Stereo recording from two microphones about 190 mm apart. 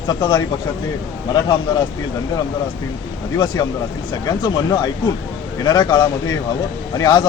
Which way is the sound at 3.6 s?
20° left (ahead or behind).